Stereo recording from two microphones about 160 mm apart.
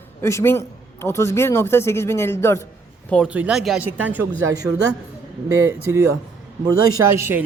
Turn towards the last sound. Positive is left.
turn(degrees=-15)  # may be behind; listen again after turning